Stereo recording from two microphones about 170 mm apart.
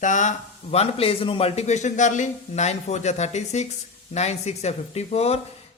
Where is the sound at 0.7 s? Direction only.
35° left (ahead or behind).